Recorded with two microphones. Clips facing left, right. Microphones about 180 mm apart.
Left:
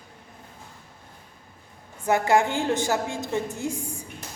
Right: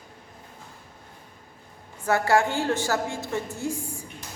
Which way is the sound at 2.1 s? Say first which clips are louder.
Left 1 dB; 20° left (ahead or behind).